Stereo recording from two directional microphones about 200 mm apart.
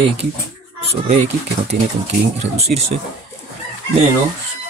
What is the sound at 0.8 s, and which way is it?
Speech, 30° right (ahead or behind).